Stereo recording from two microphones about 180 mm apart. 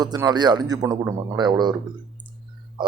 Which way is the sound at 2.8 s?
25° right (ahead or behind).